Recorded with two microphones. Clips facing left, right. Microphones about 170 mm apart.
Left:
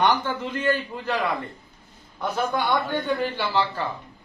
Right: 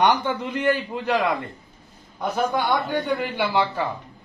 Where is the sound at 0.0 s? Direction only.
15° right (ahead or behind).